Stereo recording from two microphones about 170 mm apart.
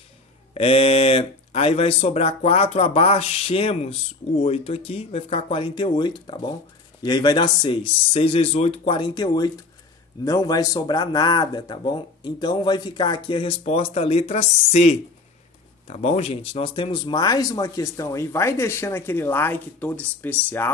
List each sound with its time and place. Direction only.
0.6 s speech: 35° left (ahead or behind); by 20.7 s 10° left (ahead or behind)